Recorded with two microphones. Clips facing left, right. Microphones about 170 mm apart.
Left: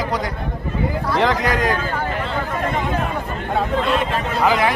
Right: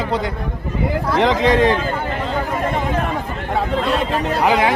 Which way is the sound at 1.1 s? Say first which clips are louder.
Right 4 dB; 20° right (ahead or behind).